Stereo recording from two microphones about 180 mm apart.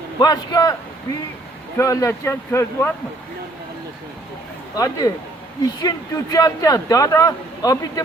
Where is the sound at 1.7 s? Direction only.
15° left (ahead or behind).